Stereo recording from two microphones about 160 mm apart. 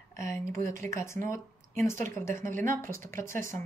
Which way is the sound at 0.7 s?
15° left (ahead or behind).